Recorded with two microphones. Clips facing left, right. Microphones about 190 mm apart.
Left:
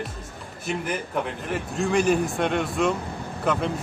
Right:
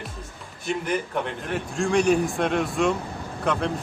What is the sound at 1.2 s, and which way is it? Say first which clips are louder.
A man's voice: even; centre (ahead or behind).